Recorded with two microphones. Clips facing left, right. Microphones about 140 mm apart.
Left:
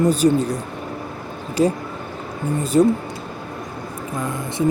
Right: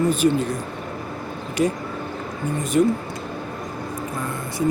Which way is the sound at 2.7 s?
30° left (ahead or behind).